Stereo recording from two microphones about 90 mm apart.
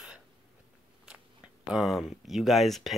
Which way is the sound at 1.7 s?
Centre (ahead or behind).